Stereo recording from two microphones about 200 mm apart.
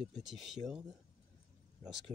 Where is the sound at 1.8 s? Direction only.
Centre (ahead or behind).